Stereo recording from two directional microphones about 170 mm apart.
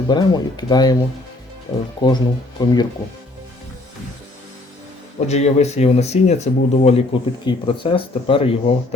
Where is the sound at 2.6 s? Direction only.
20° left (ahead or behind).